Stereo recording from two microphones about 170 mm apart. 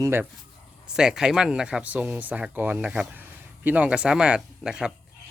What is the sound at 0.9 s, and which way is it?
Speech, 5° right (ahead or behind).